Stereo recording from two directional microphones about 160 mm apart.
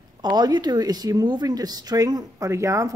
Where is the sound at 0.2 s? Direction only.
25° right (ahead or behind).